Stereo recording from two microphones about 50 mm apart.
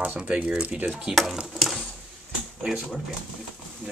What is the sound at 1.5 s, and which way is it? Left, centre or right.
Mechanisms, centre.